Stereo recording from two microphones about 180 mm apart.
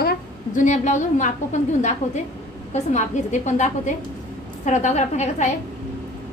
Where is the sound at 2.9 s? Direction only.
40° left (ahead or behind).